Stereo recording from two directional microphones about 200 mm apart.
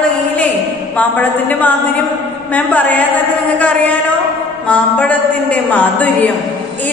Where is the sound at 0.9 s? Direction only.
10° left (ahead or behind).